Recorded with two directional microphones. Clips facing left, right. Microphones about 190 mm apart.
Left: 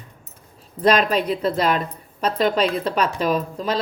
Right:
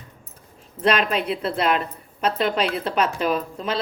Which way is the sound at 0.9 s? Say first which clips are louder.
Left 3 dB; 35° left (ahead or behind).